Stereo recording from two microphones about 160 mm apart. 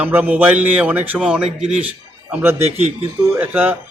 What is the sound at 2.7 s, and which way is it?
Speech, 40° right (ahead or behind).